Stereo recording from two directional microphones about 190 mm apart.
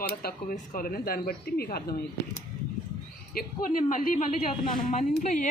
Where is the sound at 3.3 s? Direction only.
45° left (ahead or behind).